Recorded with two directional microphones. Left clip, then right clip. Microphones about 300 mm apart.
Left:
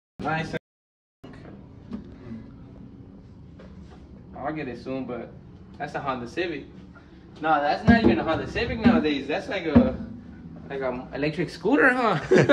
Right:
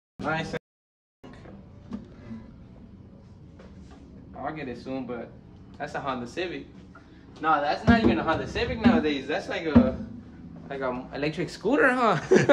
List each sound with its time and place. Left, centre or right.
4.4 s a man's voice: centre
12.1 s speech: centre